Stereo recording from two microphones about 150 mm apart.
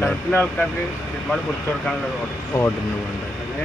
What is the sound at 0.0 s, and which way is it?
Speech, 10° left (ahead or behind).